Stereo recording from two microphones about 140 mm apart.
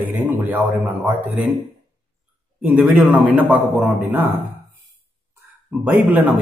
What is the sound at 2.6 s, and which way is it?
A man's voice, 10° right (ahead or behind).